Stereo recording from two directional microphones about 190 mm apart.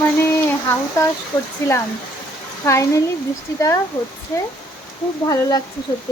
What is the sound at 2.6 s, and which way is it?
Speech, 15° left (ahead or behind).